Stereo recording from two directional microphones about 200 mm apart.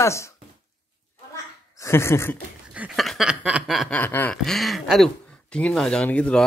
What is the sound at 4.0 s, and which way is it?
Speech, 10° left (ahead or behind).